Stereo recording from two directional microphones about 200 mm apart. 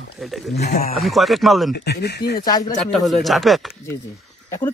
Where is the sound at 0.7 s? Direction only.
50° left (ahead or behind).